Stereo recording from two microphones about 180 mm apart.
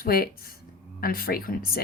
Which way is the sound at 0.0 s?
55° left (ahead or behind).